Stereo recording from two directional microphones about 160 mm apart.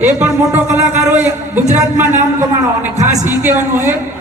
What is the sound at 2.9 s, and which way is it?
Speech, 45° right (ahead or behind).